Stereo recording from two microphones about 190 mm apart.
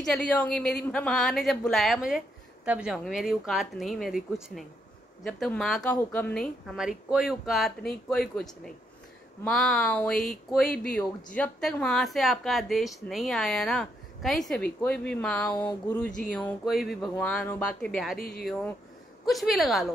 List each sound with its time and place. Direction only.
0.0 s speech: 5° left (ahead or behind)
19.2 s speech: centre (ahead or behind)